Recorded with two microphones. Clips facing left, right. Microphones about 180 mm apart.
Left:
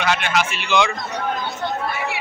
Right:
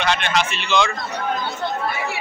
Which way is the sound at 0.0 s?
5° left (ahead or behind).